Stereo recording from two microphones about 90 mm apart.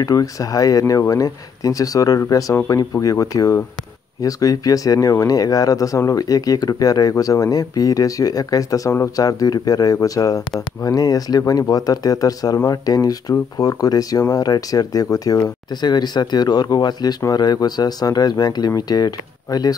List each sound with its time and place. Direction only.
0.0 s speech: 40° left (ahead or behind)